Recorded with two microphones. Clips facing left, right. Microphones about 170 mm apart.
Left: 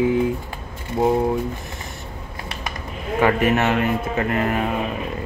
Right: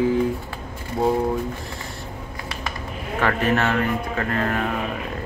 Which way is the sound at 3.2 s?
15° left (ahead or behind).